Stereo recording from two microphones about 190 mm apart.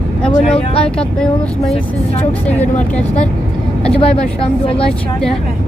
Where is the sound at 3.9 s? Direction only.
30° left (ahead or behind).